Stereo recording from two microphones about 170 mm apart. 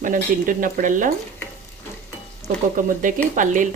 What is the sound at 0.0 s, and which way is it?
Speech, 50° right (ahead or behind).